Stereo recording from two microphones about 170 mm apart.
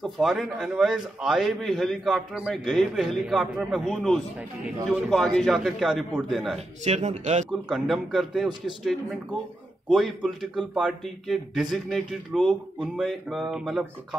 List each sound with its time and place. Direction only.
0.0 s a man's voice: centre (ahead or behind)
6.8 s speech: 45° right (ahead or behind)
7.6 s a man's voice: centre (ahead or behind)
9.8 s a man's voice: centre (ahead or behind)